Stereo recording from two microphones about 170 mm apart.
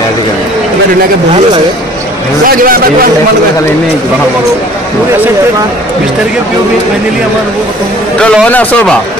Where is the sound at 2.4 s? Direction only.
60° right (ahead or behind).